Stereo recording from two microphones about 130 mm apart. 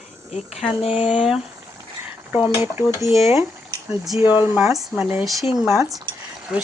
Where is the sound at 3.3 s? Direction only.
20° right (ahead or behind).